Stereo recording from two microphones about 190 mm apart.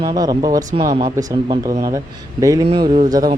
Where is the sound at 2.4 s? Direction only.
20° right (ahead or behind).